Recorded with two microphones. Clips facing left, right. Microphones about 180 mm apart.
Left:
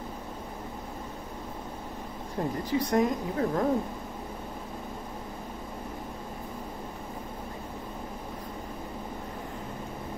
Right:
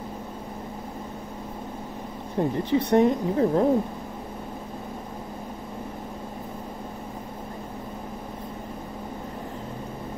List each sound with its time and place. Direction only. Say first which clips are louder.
2.4 s a woman's voice: right 6 dB; 25° right (ahead or behind)